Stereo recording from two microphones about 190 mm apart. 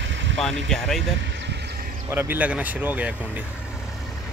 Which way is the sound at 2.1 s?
10° right (ahead or behind).